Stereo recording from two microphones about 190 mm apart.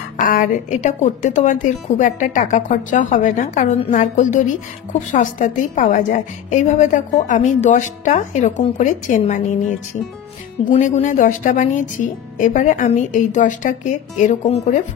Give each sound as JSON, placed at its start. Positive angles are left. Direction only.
{"t": 0.2, "sound": "a woman's voice", "side_deg": 45}